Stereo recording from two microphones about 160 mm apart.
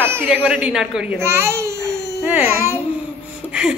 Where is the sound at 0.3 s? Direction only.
5° right (ahead or behind).